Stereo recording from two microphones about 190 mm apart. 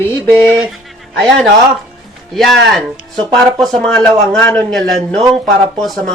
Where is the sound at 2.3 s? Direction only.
Centre (ahead or behind).